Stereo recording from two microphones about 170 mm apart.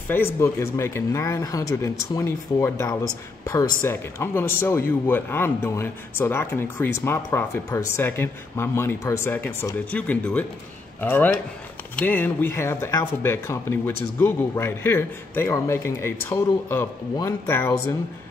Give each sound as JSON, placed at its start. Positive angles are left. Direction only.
{"t": 0.1, "sound": "speech", "side_deg": 15}